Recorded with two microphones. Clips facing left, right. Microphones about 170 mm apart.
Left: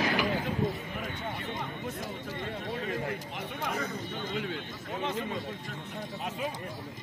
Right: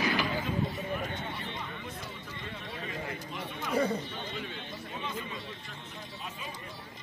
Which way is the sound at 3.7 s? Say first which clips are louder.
Right 8 dB; 30° right (ahead or behind).